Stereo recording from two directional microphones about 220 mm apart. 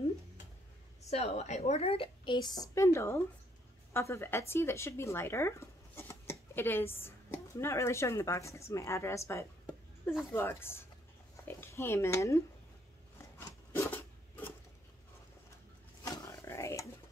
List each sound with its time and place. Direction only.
1.1 s a woman's voice: 30° left (ahead or behind); by 12.4 s 15° left (ahead or behind)
13.7 s a sound: 10° left (ahead or behind)
16.0 s roaring cats: 15° left (ahead or behind)